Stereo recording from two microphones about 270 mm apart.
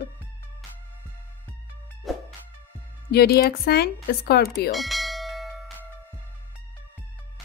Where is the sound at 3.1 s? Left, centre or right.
Left.